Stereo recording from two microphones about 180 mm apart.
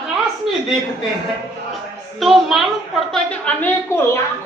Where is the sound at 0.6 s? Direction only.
Centre (ahead or behind).